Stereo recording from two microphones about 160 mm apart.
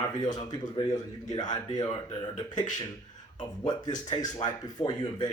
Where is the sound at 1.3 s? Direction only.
25° left (ahead or behind).